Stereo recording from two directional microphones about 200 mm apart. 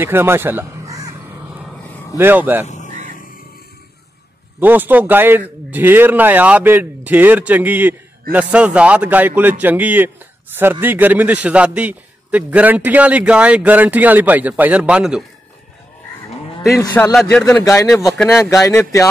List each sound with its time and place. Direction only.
0.0 s speech: 10° right (ahead or behind)
2.1 s a man's voice: 10° right (ahead or behind)
2.6 s a sound: 35° left (ahead or behind)
4.6 s a man's voice: 10° right (ahead or behind)
16.7 s a man's voice: 15° left (ahead or behind)